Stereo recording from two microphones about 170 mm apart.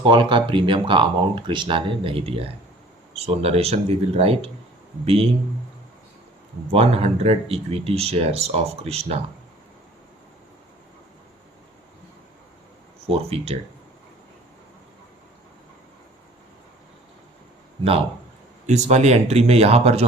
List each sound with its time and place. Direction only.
0.0 s speech: 30° right (ahead or behind)
6.7 s speech: 35° right (ahead or behind)
13.1 s speech: 35° right (ahead or behind)
18.6 s speech: 45° right (ahead or behind)